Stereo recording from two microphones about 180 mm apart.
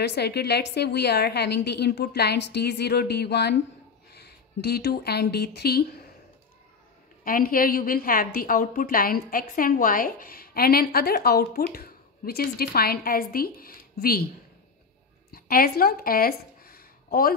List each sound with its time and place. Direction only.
0.0 s a woman's voice: 65° left (ahead or behind)
7.2 s a woman's voice: 50° left (ahead or behind)
15.3 s a sound: 55° left (ahead or behind)